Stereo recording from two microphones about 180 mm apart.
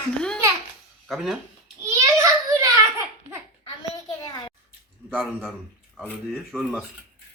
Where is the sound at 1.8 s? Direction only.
15° right (ahead or behind).